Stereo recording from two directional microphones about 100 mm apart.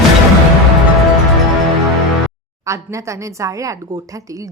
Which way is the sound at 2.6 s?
30° right (ahead or behind).